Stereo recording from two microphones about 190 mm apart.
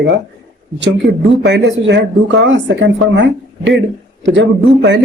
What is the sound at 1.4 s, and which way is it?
A man's voice, 65° right (ahead or behind).